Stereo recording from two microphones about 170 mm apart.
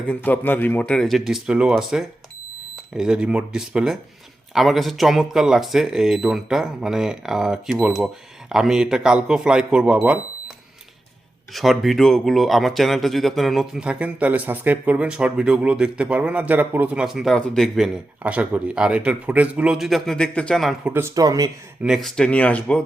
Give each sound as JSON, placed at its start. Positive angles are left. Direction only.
{"t": 0.1, "sound": "speech", "side_deg": 10}
{"t": 11.5, "sound": "speech", "side_deg": 0}
{"t": 20.9, "sound": "speech", "side_deg": -20}
{"t": 21.8, "sound": "speech", "side_deg": 0}